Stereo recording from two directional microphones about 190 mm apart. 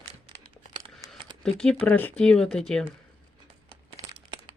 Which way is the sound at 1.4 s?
5° left (ahead or behind).